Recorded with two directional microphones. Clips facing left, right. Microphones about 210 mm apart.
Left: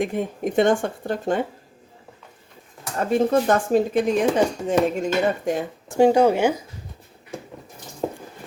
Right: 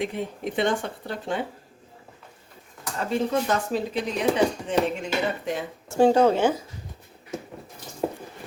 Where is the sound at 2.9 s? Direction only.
50° left (ahead or behind).